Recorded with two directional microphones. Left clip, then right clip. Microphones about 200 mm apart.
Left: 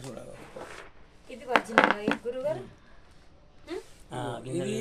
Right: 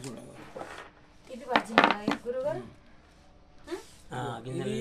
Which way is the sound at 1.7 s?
5° left (ahead or behind).